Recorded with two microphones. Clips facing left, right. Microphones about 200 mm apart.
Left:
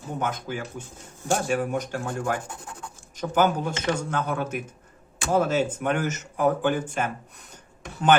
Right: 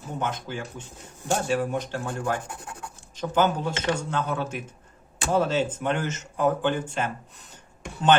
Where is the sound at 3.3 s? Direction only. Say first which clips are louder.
Left 1 dB; 10° left (ahead or behind).